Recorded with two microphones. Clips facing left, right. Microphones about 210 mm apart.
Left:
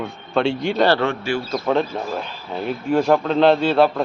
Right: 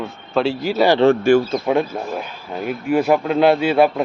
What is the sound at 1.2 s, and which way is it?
Speech, 50° right (ahead or behind).